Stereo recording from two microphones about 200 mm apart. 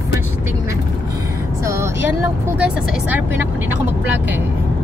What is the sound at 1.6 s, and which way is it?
Speech, 15° right (ahead or behind).